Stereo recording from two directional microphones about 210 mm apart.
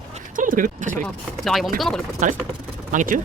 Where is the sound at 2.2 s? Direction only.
35° right (ahead or behind).